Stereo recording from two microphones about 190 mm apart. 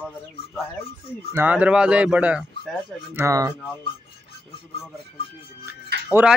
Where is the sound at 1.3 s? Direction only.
10° right (ahead or behind).